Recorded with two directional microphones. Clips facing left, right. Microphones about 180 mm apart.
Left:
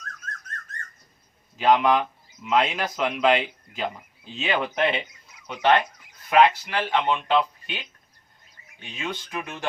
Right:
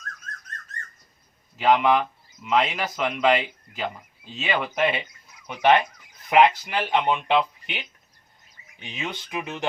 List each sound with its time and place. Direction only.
1.5 s speech: centre (ahead or behind); by 9.6 s 20° right (ahead or behind)